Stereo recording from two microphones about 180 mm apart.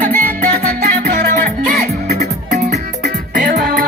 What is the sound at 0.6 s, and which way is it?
Music, 60° right (ahead or behind).